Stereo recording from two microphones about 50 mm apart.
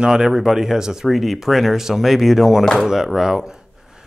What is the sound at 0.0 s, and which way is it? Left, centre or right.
Speech, centre.